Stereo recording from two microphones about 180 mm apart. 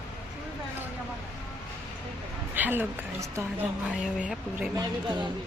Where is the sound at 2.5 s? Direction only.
10° right (ahead or behind).